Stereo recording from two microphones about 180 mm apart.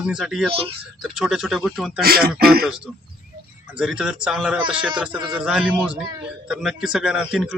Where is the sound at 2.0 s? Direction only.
60° right (ahead or behind).